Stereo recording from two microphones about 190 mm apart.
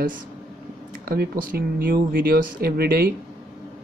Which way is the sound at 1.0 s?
55° right (ahead or behind).